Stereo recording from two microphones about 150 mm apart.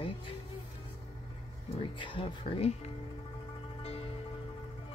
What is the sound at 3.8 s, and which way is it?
Music, 40° left (ahead or behind).